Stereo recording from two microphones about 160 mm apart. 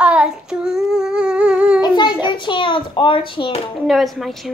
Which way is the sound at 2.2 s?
30° left (ahead or behind).